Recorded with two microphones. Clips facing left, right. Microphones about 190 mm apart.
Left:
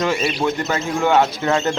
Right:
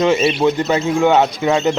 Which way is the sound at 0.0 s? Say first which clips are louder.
Right 6 dB; 20° right (ahead or behind).